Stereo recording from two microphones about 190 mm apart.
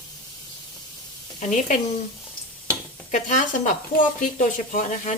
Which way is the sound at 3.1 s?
40° left (ahead or behind).